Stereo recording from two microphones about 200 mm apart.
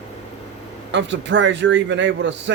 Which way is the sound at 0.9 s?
65° right (ahead or behind).